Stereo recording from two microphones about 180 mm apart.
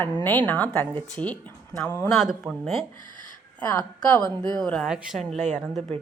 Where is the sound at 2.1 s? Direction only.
Centre (ahead or behind).